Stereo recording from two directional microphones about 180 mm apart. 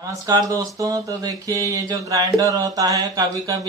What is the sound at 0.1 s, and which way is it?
Speech, 20° right (ahead or behind).